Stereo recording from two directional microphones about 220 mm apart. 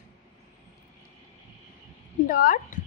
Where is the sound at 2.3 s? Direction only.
40° left (ahead or behind).